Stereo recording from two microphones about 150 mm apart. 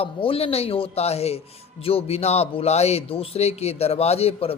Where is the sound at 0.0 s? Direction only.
40° left (ahead or behind).